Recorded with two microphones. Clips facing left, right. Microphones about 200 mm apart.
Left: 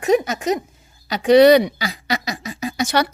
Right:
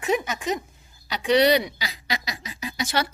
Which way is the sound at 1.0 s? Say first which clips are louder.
Left 8 dB; 45° left (ahead or behind).